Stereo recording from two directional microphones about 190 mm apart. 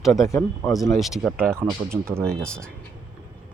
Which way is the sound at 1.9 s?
15° right (ahead or behind).